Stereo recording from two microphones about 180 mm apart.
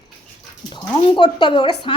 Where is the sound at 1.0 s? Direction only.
25° left (ahead or behind).